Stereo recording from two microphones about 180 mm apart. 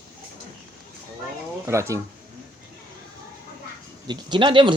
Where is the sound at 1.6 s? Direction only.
15° right (ahead or behind).